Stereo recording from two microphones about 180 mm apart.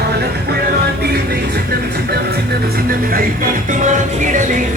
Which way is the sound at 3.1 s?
45° right (ahead or behind).